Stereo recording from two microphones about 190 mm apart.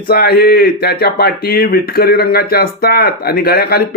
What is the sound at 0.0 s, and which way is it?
Speech, 55° left (ahead or behind).